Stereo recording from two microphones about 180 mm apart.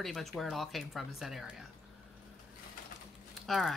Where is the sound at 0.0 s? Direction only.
Centre (ahead or behind).